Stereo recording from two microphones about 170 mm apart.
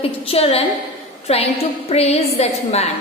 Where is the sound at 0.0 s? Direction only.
35° left (ahead or behind).